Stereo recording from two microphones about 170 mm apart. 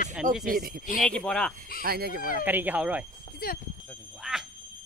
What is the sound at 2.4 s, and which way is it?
Speech, 10° right (ahead or behind).